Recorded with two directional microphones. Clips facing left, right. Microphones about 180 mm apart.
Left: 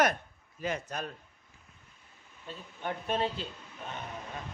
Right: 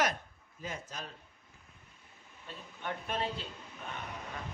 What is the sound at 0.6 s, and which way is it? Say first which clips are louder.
Speech: left 7 dB; 70° left (ahead or behind).